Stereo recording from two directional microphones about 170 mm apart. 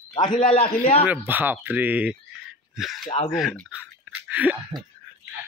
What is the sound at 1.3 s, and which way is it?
Speech, 10° right (ahead or behind).